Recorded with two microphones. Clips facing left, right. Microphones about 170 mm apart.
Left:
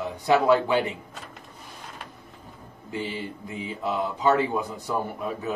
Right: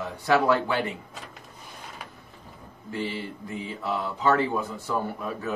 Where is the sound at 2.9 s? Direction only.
15° left (ahead or behind).